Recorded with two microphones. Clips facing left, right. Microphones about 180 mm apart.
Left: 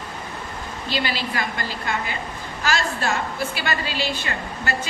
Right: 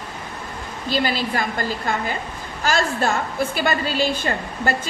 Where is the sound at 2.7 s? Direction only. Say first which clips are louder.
Right 4 dB; 50° right (ahead or behind).